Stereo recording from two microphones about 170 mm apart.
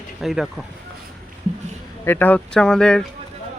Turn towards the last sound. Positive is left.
turn(degrees=5)  # may be behind; listen again after turning